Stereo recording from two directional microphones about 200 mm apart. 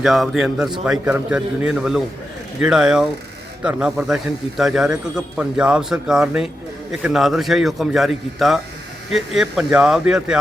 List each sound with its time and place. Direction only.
0.0 s a man's voice: centre (ahead or behind)